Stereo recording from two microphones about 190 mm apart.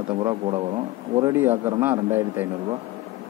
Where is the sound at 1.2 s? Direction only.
15° right (ahead or behind).